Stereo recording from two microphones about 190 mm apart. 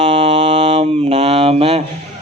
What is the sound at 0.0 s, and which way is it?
Mantra, 30° right (ahead or behind).